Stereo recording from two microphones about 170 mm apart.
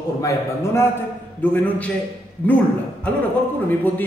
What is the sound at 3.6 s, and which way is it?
Speech, 10° left (ahead or behind).